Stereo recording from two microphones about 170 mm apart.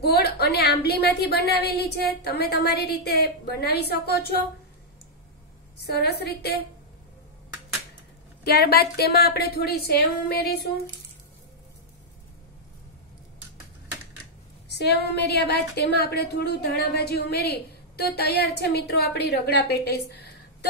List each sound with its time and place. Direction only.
0.0 s a woman's voice: 70° left (ahead or behind)
5.8 s a woman's voice: 70° left (ahead or behind)
8.5 s a woman's voice: 70° left (ahead or behind)
14.7 s a woman's voice: 75° left (ahead or behind)